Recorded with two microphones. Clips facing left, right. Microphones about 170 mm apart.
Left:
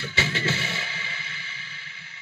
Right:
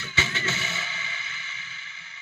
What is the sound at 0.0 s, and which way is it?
Music, 30° left (ahead or behind).